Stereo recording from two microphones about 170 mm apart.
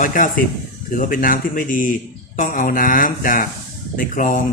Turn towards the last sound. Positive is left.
turn(degrees=55)  # may be behind; listen again after turning